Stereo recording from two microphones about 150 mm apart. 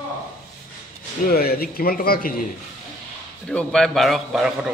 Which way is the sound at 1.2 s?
90° left.